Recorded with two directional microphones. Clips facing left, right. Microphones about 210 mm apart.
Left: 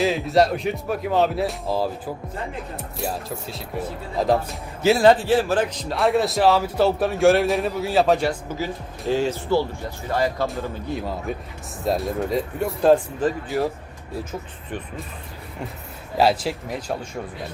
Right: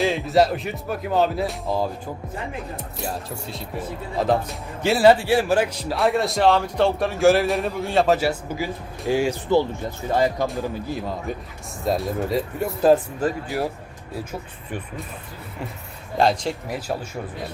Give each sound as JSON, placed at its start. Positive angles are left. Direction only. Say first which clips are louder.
{"t": 0.0, "sound": "speech", "louder": "even", "side_deg": 0}
{"t": 10.5, "sound": "speech", "louder": "right 1 dB", "side_deg": 0}
{"t": 16.1, "sound": "speech", "louder": "left 1 dB", "side_deg": 5}